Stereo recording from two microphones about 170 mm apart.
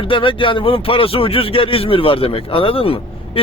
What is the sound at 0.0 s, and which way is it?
Speech, 30° left (ahead or behind).